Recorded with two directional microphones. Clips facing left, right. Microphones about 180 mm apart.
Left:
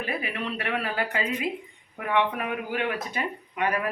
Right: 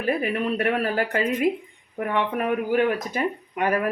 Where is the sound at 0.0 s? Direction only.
45° right (ahead or behind).